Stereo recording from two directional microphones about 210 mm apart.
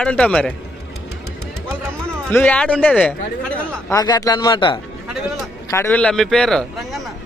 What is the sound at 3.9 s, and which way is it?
Speech, 15° left (ahead or behind).